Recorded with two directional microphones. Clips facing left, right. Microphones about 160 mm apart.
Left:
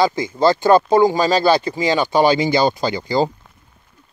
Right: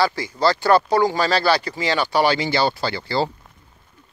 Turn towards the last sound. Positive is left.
turn(degrees=15)  # may be behind; listen again after turning